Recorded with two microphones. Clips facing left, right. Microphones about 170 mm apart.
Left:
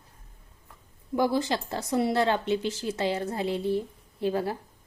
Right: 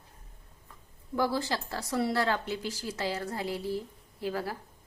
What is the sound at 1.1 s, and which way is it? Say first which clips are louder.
A woman's voice: left 4 dB; 20° left (ahead or behind).